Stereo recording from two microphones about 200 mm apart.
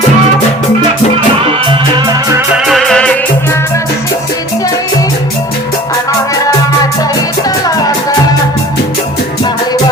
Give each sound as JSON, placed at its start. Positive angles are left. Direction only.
{"t": 1.6, "sound": "music", "side_deg": -20}
{"t": 2.6, "sound": "music", "side_deg": 0}